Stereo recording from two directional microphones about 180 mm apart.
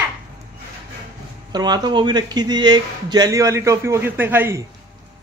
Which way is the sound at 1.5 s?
20° right (ahead or behind).